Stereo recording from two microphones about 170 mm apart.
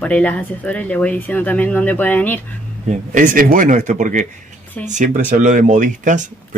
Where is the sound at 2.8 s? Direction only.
50° right (ahead or behind).